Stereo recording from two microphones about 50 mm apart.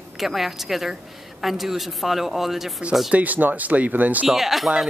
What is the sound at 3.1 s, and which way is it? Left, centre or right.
Speech, right.